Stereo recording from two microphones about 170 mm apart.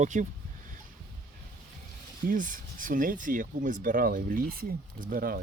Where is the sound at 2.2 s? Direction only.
50° right (ahead or behind).